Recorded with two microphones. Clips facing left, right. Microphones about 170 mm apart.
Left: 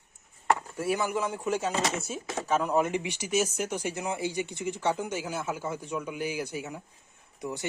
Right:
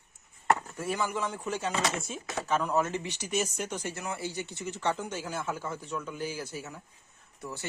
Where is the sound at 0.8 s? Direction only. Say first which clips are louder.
Left 3 dB; 10° left (ahead or behind).